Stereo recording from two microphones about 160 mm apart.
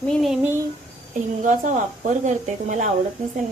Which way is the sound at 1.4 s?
50° right (ahead or behind).